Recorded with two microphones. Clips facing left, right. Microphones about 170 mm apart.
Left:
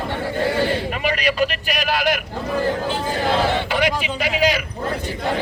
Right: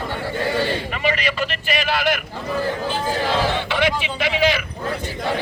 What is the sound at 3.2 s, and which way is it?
Speech, 40° left (ahead or behind).